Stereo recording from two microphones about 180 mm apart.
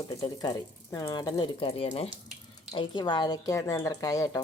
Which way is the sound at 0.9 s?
15° left (ahead or behind).